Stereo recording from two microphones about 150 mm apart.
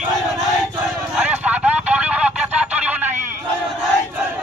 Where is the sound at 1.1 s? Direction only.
10° right (ahead or behind).